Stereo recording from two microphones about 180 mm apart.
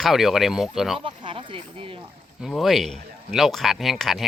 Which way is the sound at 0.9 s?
30° right (ahead or behind).